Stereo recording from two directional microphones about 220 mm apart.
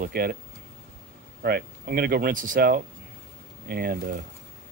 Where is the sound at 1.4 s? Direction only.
45° right (ahead or behind).